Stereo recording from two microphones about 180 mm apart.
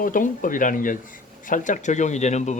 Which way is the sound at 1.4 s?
45° left (ahead or behind).